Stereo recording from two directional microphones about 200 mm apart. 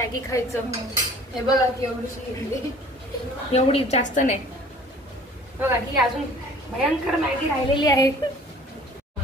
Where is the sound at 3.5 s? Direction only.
30° left (ahead or behind).